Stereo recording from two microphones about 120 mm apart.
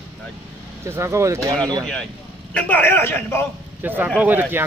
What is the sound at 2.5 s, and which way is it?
Speech, 10° left (ahead or behind).